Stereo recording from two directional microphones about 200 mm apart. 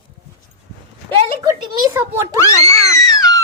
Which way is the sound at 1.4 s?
20° right (ahead or behind).